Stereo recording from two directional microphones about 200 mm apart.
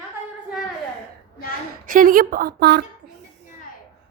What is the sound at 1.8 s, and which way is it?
Speech, 45° right (ahead or behind).